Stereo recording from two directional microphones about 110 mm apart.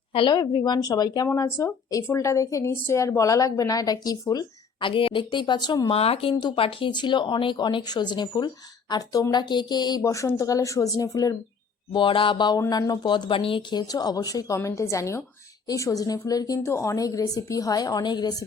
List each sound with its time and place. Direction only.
0.1 s a woman's voice: 55° left (ahead or behind)
0.3 s a woman's voice: 40° left (ahead or behind)
1.4 s speech: 25° left (ahead or behind)
4.8 s speech: 55° left (ahead or behind)
5.9 s a woman's voice: 60° left (ahead or behind); by 10.0 s 40° left (ahead or behind)
10.0 s a woman's voice: 30° left (ahead or behind)
11.9 s speech: 50° left (ahead or behind)
12.5 s a woman's voice: 30° left (ahead or behind)